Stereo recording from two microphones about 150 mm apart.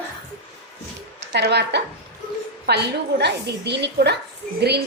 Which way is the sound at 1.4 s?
90° right.